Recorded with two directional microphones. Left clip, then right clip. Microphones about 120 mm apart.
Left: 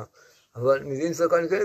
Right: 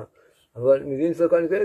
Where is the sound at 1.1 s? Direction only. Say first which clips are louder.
Right 2 dB; 20° right (ahead or behind).